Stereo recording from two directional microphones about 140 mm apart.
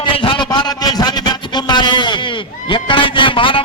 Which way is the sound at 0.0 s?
35° left (ahead or behind).